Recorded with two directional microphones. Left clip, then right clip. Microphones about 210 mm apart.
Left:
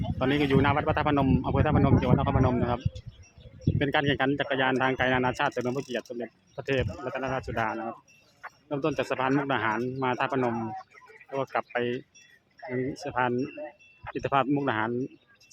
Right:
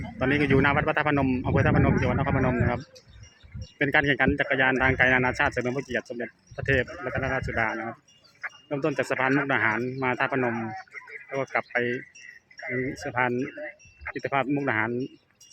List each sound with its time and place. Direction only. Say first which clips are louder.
0.2 s speech: right 2 dB; centre (ahead or behind)
10.4 s speech: right 1 dB; 20° right (ahead or behind)
11.3 s speech: right 2 dB; centre (ahead or behind)
12.5 s speech: right 2 dB; 20° right (ahead or behind)
13.1 s speech: right 1 dB; centre (ahead or behind)
13.4 s speech: right 2 dB; 20° right (ahead or behind)
14.2 s speech: left 1 dB; 5° left (ahead or behind)